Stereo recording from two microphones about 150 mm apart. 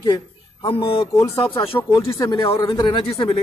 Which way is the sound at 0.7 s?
35° left (ahead or behind).